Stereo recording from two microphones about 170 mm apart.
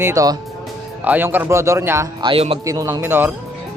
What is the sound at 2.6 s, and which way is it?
Speech, 20° right (ahead or behind).